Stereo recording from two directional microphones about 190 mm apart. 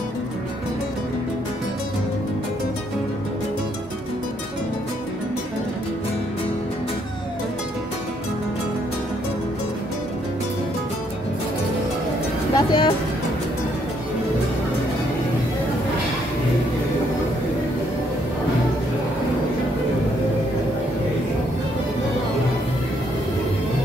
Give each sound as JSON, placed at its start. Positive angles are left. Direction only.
{"t": 12.5, "sound": "speech", "side_deg": 25}